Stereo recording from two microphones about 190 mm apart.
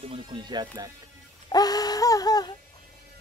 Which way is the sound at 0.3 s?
25° right (ahead or behind).